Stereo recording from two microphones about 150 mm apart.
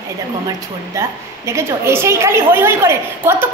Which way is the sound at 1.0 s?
20° right (ahead or behind).